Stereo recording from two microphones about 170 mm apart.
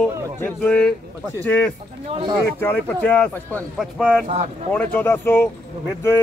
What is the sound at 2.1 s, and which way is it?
Speech, 30° right (ahead or behind).